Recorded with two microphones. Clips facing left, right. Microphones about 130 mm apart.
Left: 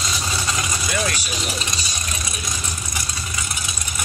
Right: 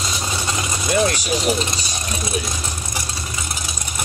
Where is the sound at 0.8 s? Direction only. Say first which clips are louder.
Right 8 dB; 30° right (ahead or behind).